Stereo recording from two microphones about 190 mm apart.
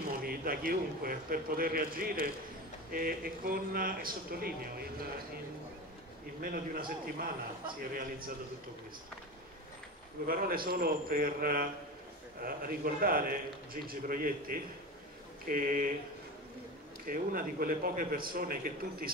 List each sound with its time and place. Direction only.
0.2 s a man's voice: 50° right (ahead or behind)
6.4 s a man's voice: 50° right (ahead or behind)
10.2 s a man's voice: 50° right (ahead or behind)
17.1 s a man's voice: 45° right (ahead or behind)